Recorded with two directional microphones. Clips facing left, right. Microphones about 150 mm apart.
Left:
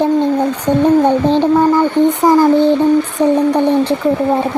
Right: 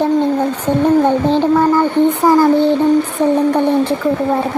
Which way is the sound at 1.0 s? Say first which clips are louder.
Left 1 dB; 15° left (ahead or behind).